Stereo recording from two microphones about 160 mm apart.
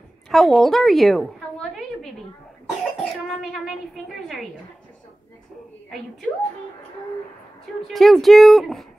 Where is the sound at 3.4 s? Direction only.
Centre (ahead or behind).